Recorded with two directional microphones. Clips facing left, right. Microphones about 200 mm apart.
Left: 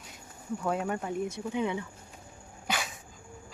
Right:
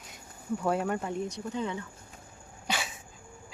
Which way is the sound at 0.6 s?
Centre (ahead or behind).